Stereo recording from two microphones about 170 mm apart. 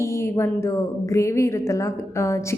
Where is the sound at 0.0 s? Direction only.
15° left (ahead or behind).